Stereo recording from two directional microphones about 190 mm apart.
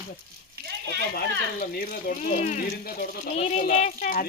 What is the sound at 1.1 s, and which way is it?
Speech, 50° left (ahead or behind).